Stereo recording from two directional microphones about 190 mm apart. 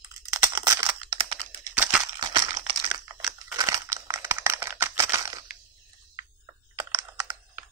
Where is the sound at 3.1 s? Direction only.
5° right (ahead or behind).